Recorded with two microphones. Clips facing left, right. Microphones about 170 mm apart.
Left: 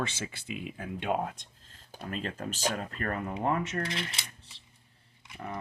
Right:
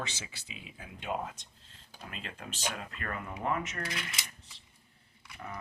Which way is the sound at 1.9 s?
40° left (ahead or behind).